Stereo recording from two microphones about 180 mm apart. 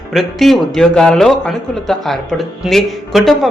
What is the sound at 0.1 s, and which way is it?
A man's voice, centre (ahead or behind).